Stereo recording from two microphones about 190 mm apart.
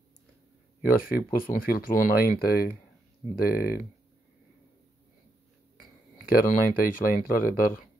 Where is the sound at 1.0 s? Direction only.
50° left (ahead or behind).